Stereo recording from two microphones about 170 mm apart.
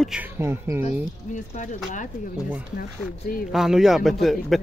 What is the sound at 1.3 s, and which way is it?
Speech, 45° left (ahead or behind).